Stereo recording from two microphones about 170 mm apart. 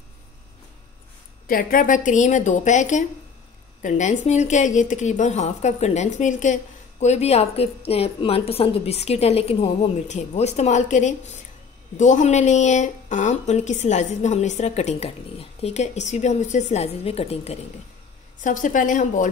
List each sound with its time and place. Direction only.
1.5 s speech: 55° left (ahead or behind); by 17.6 s 35° left (ahead or behind)
18.4 s speech: 50° left (ahead or behind)